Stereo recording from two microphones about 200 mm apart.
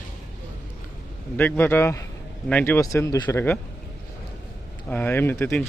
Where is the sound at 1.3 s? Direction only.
10° left (ahead or behind).